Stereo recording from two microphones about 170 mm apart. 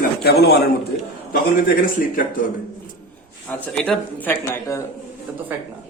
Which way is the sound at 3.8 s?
10° left (ahead or behind).